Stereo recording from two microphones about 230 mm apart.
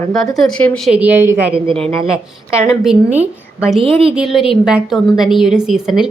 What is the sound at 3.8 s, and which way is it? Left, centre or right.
Speech, right.